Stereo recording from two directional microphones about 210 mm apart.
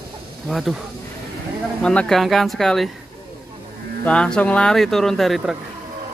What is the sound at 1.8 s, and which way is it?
Speech, 5° left (ahead or behind).